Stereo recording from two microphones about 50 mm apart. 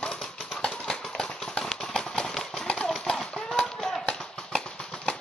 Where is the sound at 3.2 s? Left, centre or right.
Centre.